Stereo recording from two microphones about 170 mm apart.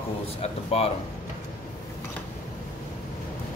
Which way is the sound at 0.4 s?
35° left (ahead or behind).